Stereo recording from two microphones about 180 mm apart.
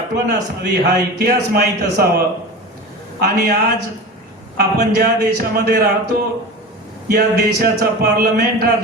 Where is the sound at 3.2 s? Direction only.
60° right (ahead or behind).